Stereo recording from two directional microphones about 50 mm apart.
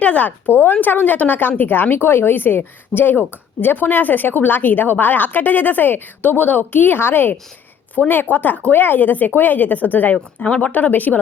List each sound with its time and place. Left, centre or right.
0.0 s a woman's voice: left
10.2 s speech: left
10.7 s a woman's voice: left